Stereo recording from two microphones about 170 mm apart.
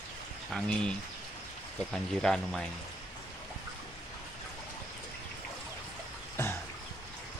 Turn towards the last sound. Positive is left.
turn(degrees=15)  # may be behind; listen again after turning